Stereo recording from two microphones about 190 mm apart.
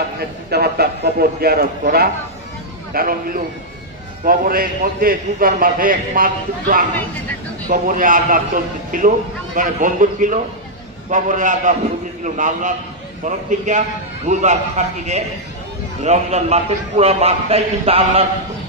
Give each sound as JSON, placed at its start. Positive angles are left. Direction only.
{"t": 0.2, "sound": "a man's voice", "side_deg": -55}
{"t": 16.0, "sound": "a man's voice", "side_deg": -35}